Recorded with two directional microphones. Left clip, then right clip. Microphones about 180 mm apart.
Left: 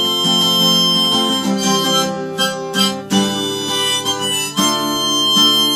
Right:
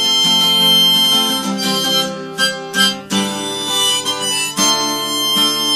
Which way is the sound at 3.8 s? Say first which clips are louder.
Right 2 dB; 15° right (ahead or behind).